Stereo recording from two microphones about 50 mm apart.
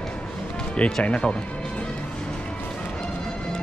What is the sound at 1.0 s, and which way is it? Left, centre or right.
Speech, left.